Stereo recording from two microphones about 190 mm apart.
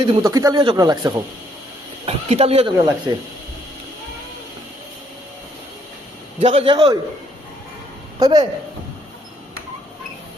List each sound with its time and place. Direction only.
0.0 s speech: 25° right (ahead or behind)
2.0 s speech: 30° right (ahead or behind)
6.4 s speech: 30° right (ahead or behind)
8.2 s speech: 20° right (ahead or behind)